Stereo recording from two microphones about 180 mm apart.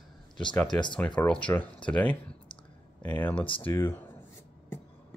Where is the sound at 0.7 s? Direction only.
25° left (ahead or behind).